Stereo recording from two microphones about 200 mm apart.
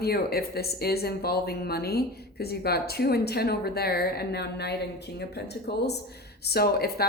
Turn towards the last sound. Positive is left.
turn(degrees=50)  # may be behind; listen again after turning